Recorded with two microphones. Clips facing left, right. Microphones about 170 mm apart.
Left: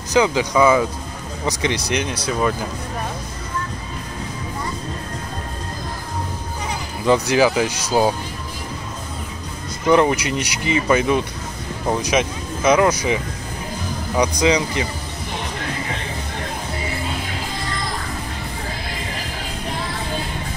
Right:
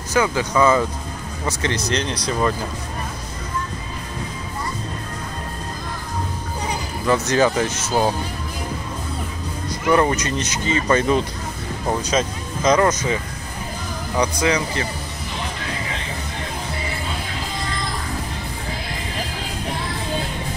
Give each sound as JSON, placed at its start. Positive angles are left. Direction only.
{"t": 0.1, "sound": "speech", "side_deg": 15}
{"t": 7.1, "sound": "speech", "side_deg": 10}
{"t": 9.9, "sound": "speech", "side_deg": 10}